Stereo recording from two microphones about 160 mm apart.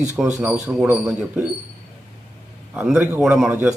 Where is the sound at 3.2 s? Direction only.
5° right (ahead or behind).